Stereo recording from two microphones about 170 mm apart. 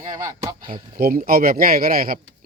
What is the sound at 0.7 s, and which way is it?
Speech, 55° right (ahead or behind).